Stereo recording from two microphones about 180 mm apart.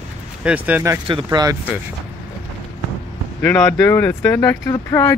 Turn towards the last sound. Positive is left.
turn(degrees=15)  # may be behind; listen again after turning